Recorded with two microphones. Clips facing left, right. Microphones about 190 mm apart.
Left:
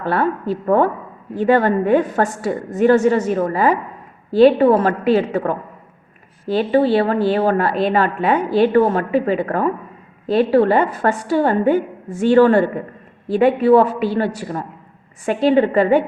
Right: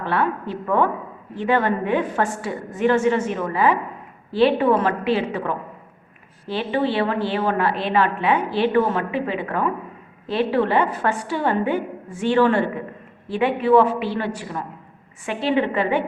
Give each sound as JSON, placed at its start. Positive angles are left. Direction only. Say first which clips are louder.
{"t": 0.0, "sound": "a woman's voice", "louder": "left 4 dB", "side_deg": 40}